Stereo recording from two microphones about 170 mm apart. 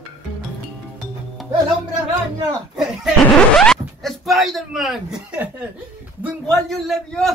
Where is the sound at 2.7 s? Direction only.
Centre (ahead or behind).